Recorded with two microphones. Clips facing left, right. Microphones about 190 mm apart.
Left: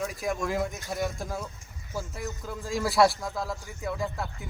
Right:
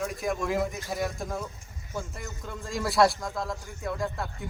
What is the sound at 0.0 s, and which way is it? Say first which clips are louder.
Speech: even; centre (ahead or behind).